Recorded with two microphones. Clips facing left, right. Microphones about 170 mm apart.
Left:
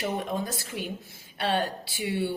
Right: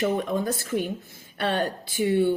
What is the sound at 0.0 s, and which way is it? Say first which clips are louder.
A woman's voice: right 5 dB; 50° right (ahead or behind).